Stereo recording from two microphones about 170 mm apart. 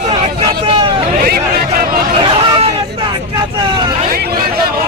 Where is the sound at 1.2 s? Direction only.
60° right (ahead or behind).